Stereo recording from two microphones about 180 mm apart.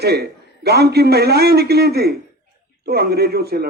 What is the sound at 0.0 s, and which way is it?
A man's voice, 65° right (ahead or behind).